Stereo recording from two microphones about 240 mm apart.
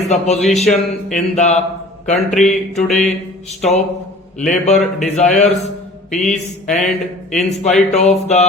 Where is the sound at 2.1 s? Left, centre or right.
Centre.